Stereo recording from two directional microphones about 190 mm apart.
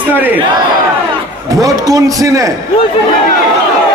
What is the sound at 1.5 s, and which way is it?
A man's voice, 20° right (ahead or behind).